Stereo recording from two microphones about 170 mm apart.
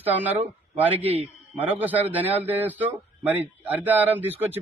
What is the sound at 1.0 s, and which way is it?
Speech, 35° right (ahead or behind).